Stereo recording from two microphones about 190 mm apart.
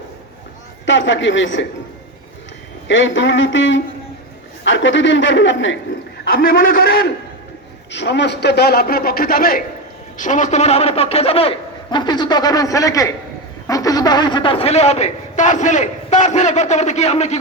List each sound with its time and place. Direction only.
0.9 s a man's voice: 75° left (ahead or behind)
2.8 s a man's voice: 80° left
6.3 s a man's voice: 50° left (ahead or behind)
7.9 s a man's voice: 65° left (ahead or behind); by 17.3 s 35° left (ahead or behind)